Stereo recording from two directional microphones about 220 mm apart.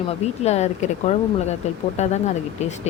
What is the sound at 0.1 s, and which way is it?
Speech, 30° left (ahead or behind).